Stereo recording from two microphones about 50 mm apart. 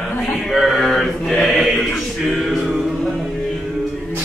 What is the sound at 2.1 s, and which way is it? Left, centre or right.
Music, centre.